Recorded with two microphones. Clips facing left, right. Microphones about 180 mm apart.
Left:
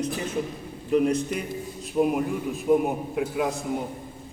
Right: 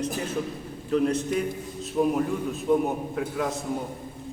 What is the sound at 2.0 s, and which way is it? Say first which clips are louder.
A man's voice: left 1 dB; 15° left (ahead or behind).